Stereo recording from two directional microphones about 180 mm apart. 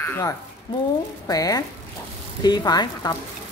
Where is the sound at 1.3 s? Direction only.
20° left (ahead or behind).